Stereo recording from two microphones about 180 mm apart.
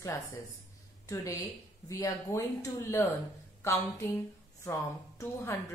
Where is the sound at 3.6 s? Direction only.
15° left (ahead or behind).